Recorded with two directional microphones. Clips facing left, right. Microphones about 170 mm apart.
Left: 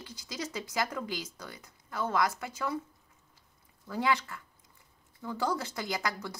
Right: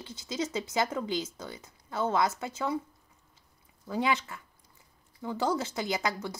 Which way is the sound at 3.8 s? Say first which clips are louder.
Right 1 dB; 20° right (ahead or behind).